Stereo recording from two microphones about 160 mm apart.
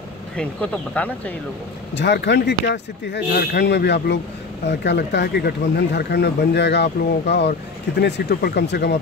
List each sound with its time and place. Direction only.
0.4 s speech: 10° left (ahead or behind)
2.0 s speech: 90° left
8.0 s speech: 80° left